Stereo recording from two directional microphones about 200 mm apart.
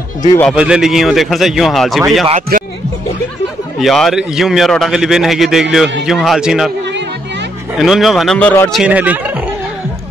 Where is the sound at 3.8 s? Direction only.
Centre (ahead or behind).